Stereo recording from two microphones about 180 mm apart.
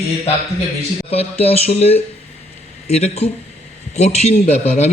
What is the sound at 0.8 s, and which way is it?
A man's voice, 35° left (ahead or behind).